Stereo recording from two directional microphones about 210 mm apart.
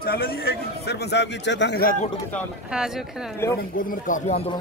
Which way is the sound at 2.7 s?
Centre (ahead or behind).